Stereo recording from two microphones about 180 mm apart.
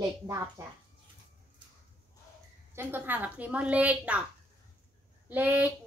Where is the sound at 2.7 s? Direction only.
10° right (ahead or behind).